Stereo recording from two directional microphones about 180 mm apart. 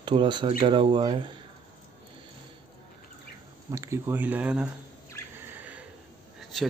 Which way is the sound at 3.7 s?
15° right (ahead or behind).